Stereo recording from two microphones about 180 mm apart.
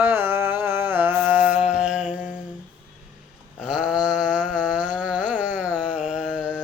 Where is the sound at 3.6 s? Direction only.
5° right (ahead or behind).